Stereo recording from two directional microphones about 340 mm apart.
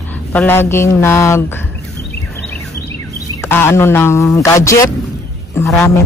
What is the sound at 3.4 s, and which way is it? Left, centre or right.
Speech, centre.